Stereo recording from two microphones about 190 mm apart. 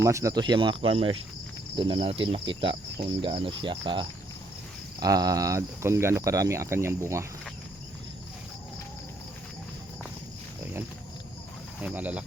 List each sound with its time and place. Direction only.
0.0 s cricket: 15° right (ahead or behind)
4.9 s speech: 20° right (ahead or behind)
11.8 s speech: 10° right (ahead or behind)